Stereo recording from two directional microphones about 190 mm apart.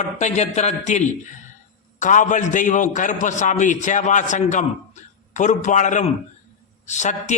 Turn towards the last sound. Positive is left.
turn(degrees=40)  # may be behind; listen again after turning